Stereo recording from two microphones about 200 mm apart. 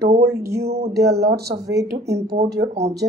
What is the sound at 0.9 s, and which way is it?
Speech, 55° right (ahead or behind).